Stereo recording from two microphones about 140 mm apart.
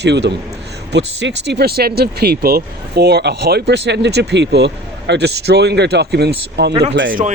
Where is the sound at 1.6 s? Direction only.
90° right.